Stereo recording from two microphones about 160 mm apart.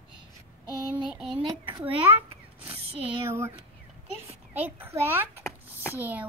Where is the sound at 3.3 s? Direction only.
15° right (ahead or behind).